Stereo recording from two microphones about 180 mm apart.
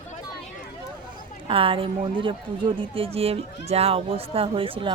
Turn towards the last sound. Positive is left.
turn(degrees=-30)  # may be behind; listen again after turning